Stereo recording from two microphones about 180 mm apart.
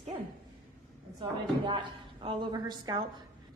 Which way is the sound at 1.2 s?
25° right (ahead or behind).